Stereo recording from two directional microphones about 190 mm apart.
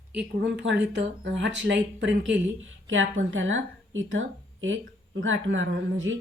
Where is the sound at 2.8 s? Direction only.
85° right.